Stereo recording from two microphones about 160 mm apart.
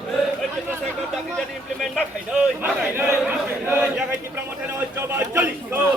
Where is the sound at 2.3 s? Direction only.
5° right (ahead or behind).